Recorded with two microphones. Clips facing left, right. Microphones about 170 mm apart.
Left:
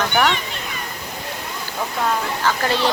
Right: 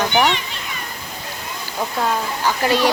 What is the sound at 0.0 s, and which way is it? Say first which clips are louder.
Children playing: right 2 dB; 15° right (ahead or behind).